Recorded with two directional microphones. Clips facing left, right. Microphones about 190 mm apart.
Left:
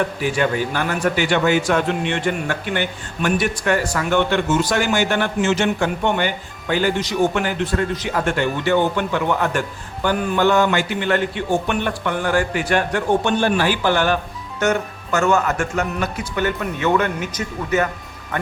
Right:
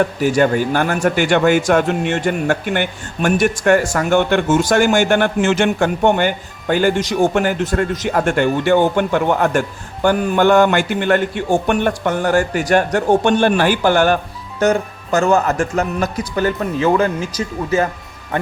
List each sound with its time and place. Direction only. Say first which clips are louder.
0.2 s a man's voice: right 5 dB; 45° right (ahead or behind)
14.6 s speech: right 4 dB; 35° right (ahead or behind)